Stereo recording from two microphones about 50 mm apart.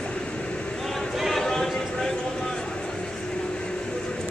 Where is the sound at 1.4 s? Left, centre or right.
Centre.